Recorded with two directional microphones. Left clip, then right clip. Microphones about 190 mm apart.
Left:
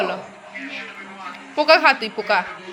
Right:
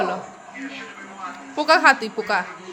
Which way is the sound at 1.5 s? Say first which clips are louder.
Left 1 dB; 15° right (ahead or behind).